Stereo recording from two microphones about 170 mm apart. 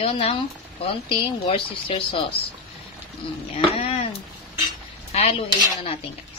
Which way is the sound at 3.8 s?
35° left (ahead or behind).